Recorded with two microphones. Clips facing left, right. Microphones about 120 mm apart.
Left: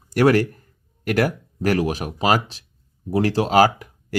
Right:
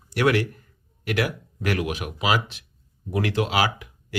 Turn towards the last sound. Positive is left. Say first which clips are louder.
# left 6 dB
turn(degrees=45)  # may be behind; listen again after turning